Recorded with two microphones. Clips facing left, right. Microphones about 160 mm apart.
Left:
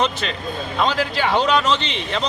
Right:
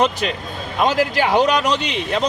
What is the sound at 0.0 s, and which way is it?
Speech, 10° right (ahead or behind).